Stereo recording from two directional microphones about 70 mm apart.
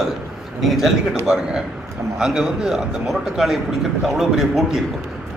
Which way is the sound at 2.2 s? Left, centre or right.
Centre.